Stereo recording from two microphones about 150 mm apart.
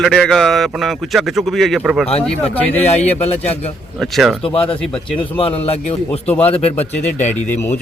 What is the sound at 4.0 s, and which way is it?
Speech, centre (ahead or behind).